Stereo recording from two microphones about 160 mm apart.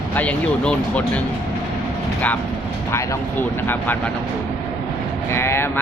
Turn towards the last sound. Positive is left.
turn(degrees=15)  # may be behind; listen again after turning